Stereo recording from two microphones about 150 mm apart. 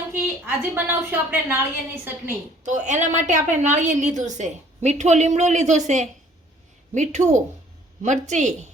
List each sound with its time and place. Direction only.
0.1 s a woman's voice: 15° right (ahead or behind)
2.6 s a woman's voice: 55° right (ahead or behind)